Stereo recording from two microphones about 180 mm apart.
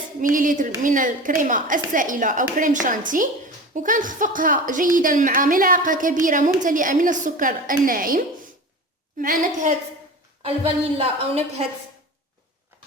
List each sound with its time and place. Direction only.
0.3 s a woman's voice: 45° right (ahead or behind)
10.4 s speech: 30° right (ahead or behind)